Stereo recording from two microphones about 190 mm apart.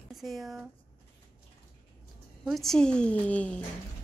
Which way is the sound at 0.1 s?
Centre (ahead or behind).